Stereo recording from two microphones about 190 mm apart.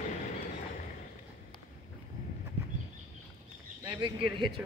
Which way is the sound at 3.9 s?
25° right (ahead or behind).